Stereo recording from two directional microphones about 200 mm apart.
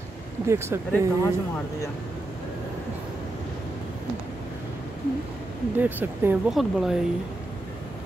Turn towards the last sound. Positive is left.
turn(degrees=0)  # may be behind; listen again after turning